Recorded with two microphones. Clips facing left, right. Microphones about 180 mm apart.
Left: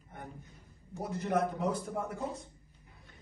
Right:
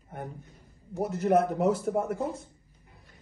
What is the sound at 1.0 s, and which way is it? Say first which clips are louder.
Speech: right 7 dB; 75° right (ahead or behind).